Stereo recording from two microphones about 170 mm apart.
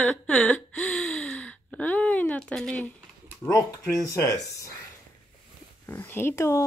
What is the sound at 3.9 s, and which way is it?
Speech, 20° left (ahead or behind).